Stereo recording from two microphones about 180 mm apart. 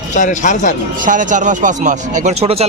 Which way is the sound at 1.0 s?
45° right (ahead or behind).